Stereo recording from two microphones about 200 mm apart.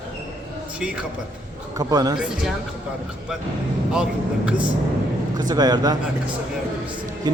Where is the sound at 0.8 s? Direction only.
5° right (ahead or behind).